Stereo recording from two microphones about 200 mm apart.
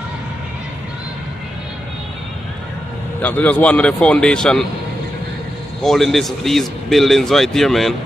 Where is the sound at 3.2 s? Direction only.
5° left (ahead or behind).